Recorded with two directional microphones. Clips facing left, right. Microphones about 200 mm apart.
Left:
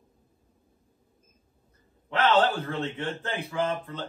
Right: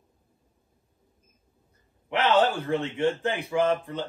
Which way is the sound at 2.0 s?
15° right (ahead or behind).